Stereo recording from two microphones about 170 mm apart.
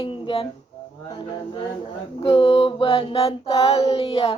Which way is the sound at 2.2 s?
35° left (ahead or behind).